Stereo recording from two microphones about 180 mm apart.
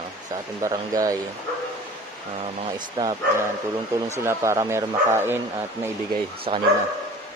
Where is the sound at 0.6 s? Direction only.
20° right (ahead or behind).